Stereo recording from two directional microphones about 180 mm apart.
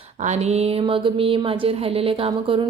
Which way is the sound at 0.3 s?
35° right (ahead or behind).